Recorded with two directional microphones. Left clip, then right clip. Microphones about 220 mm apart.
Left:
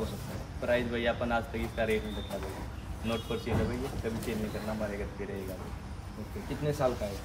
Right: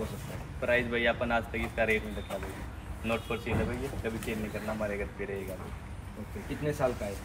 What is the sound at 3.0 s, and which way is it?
Speech, centre (ahead or behind).